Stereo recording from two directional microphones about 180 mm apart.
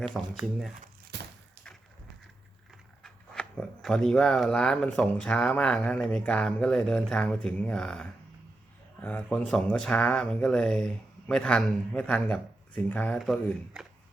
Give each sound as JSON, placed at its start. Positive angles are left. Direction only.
{"t": 0.3, "sound": "speech", "side_deg": 0}
{"t": 1.1, "sound": "a sound", "side_deg": -70}
{"t": 3.0, "sound": "speech", "side_deg": 5}